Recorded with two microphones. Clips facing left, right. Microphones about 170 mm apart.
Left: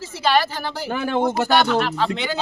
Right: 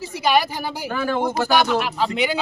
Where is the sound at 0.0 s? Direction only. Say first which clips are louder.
Even; 15° right (ahead or behind).